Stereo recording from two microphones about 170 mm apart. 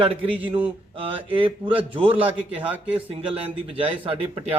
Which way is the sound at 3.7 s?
35° right (ahead or behind).